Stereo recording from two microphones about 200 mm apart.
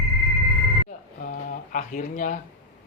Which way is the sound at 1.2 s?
40° left (ahead or behind).